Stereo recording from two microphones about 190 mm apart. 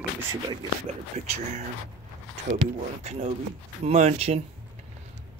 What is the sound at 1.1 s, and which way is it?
Speech, 35° right (ahead or behind).